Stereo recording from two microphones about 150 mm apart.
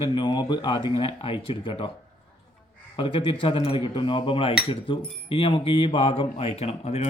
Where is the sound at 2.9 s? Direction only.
35° left (ahead or behind).